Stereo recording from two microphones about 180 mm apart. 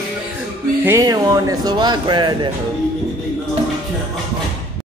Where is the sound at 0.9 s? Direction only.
20° right (ahead or behind).